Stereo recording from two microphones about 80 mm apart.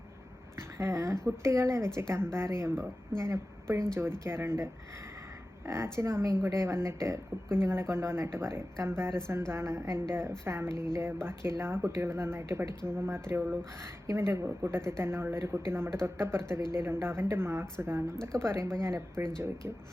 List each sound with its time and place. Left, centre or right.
0.8 s a woman's voice: right